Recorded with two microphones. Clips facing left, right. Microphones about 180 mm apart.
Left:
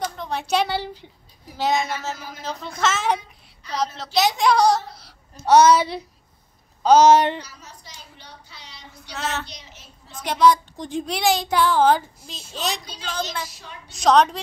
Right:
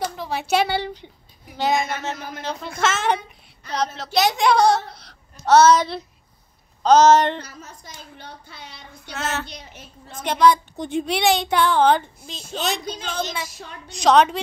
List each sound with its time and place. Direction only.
0.0 s a woman's voice: 5° right (ahead or behind)
7.3 s speech: 50° right (ahead or behind)
9.1 s speech: centre (ahead or behind)
9.5 s a woman's voice: 55° right (ahead or behind)
10.2 s speech: centre (ahead or behind)
13.8 s speech: centre (ahead or behind)